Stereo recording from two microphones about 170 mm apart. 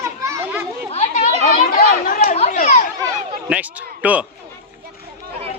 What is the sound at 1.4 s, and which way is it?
Speech, 55° left (ahead or behind).